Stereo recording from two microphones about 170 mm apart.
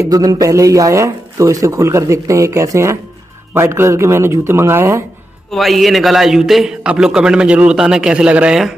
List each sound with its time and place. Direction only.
0.0 s a man's voice: 20° right (ahead or behind)
5.5 s a man's voice: centre (ahead or behind)